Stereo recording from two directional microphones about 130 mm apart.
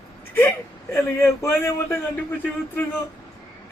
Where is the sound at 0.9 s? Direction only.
25° left (ahead or behind).